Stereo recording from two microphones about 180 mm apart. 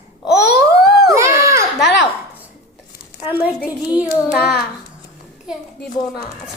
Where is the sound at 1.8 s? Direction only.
70° left (ahead or behind).